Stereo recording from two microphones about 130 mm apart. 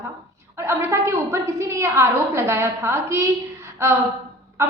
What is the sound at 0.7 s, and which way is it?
A woman's voice, 20° right (ahead or behind).